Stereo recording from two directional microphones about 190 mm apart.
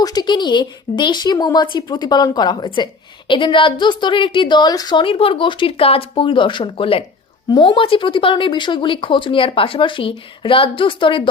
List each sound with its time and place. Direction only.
0.0 s a woman's voice: 20° left (ahead or behind)